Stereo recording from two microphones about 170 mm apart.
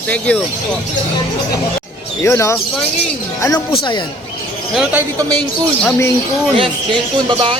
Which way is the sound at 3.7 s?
30° left (ahead or behind).